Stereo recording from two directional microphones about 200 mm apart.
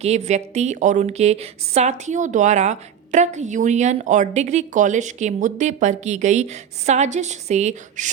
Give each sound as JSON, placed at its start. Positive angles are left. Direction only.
{"t": 0.0, "sound": "a woman's voice", "side_deg": -35}